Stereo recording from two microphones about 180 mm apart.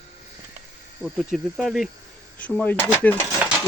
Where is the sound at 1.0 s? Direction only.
Centre (ahead or behind).